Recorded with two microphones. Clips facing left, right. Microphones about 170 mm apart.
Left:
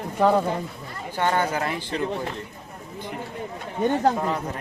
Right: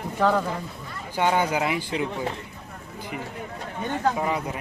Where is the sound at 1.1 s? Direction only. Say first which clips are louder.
Right 1 dB; 10° right (ahead or behind).